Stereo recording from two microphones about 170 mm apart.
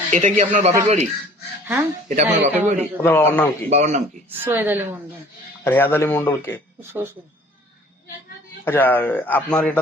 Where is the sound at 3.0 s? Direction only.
10° left (ahead or behind).